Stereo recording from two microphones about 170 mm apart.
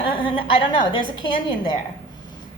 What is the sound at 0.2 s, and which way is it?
A woman's voice, 30° left (ahead or behind).